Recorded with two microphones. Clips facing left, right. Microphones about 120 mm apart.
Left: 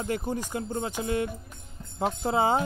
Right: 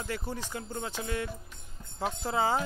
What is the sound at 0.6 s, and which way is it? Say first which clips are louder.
Music: left 6 dB; 30° left (ahead or behind).